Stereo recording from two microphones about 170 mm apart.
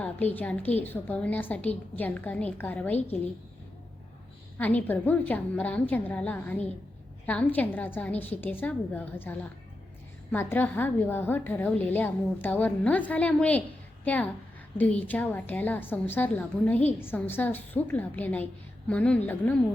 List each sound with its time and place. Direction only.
0.0 s a woman's voice: 10° left (ahead or behind)
4.5 s a woman's voice: 10° left (ahead or behind)